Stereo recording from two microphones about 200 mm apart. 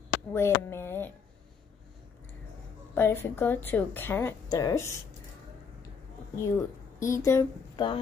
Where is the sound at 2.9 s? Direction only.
10° left (ahead or behind).